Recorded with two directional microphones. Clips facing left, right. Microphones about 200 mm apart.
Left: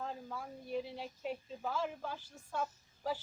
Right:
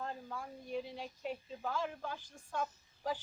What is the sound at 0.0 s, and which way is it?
A woman's voice, 5° left (ahead or behind).